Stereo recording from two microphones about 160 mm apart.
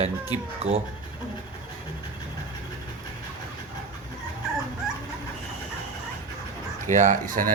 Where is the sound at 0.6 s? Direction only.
40° right (ahead or behind).